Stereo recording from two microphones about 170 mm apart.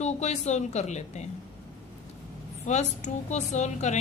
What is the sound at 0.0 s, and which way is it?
Speech, 40° left (ahead or behind).